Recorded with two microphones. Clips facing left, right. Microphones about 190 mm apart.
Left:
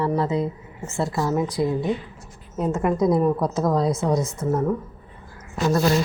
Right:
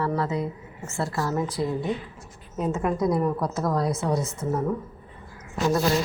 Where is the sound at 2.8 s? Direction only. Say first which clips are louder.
Left 5 dB; 20° left (ahead or behind).